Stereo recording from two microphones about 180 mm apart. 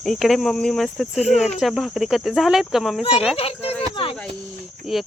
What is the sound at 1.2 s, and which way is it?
Speech, 40° left (ahead or behind).